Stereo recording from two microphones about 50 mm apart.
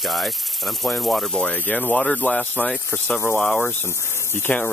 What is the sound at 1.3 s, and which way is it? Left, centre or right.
Speech, centre.